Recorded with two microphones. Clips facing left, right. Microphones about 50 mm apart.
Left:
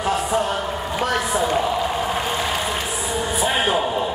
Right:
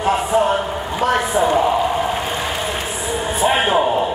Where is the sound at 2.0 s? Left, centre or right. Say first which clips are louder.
Right 1 dB; centre.